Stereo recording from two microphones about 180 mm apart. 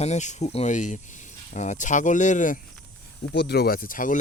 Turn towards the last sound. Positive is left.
turn(degrees=50)  # may be behind; listen again after turning